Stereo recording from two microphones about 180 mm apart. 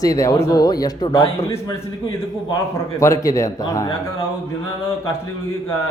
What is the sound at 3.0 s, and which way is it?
Speech, 20° left (ahead or behind).